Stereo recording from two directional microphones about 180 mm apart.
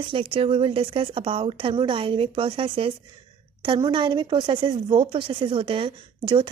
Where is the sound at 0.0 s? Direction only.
30° right (ahead or behind).